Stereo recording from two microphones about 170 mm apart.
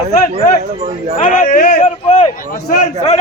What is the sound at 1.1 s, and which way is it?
A man's voice, 50° left (ahead or behind).